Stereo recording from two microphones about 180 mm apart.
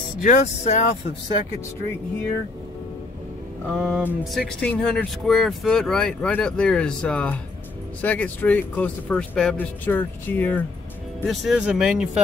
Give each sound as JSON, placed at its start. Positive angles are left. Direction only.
{"t": 0.2, "sound": "speech", "side_deg": 45}
{"t": 3.7, "sound": "speech", "side_deg": 0}